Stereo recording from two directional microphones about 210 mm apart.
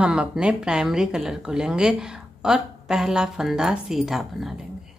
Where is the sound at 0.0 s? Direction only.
5° right (ahead or behind).